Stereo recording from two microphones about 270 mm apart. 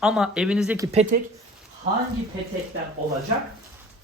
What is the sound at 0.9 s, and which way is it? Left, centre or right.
Speech, right.